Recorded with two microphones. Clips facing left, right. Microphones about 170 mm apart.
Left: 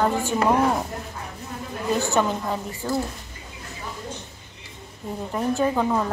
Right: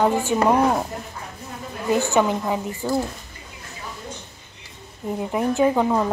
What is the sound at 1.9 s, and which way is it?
A woman's voice, 15° right (ahead or behind).